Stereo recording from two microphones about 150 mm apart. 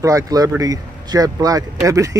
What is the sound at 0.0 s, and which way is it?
Speech, 25° right (ahead or behind).